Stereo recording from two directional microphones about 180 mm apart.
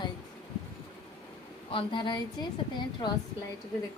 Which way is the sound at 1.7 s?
30° left (ahead or behind).